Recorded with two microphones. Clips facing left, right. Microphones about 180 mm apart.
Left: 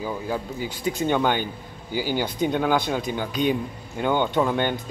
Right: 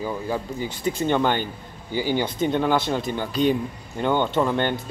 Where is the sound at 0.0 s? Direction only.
10° left (ahead or behind).